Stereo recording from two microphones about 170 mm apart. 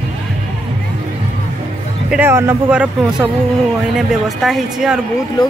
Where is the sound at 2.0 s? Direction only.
10° right (ahead or behind).